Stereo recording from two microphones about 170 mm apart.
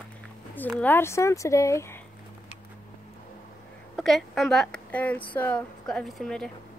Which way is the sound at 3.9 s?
Centre (ahead or behind).